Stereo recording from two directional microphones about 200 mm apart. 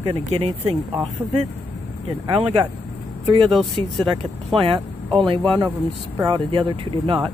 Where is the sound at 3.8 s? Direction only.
25° right (ahead or behind).